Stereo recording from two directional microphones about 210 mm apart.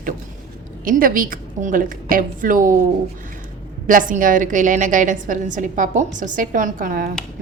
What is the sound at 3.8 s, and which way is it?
A woman's voice, 40° right (ahead or behind).